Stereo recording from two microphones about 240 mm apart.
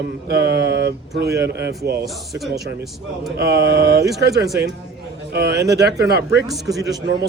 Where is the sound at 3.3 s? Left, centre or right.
Right.